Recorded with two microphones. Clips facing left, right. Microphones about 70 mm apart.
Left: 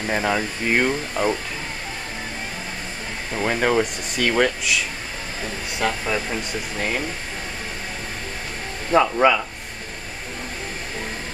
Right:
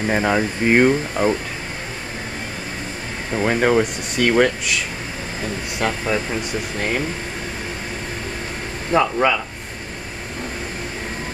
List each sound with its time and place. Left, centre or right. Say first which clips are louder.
0.0 s speech: right 4 dB; centre
3.3 s speech: right 3 dB; centre
5.8 s speech: right 2 dB; centre
8.9 s speech: left 1 dB; centre